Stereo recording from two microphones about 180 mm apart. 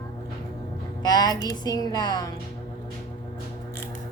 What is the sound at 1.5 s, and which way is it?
Speech, 20° left (ahead or behind).